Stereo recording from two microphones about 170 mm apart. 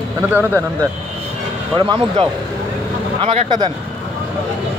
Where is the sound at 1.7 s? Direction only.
30° right (ahead or behind).